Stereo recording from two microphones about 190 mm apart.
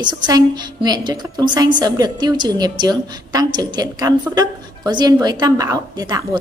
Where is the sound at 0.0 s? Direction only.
25° right (ahead or behind).